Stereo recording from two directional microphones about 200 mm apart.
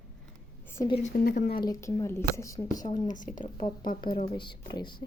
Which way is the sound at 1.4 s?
25° left (ahead or behind).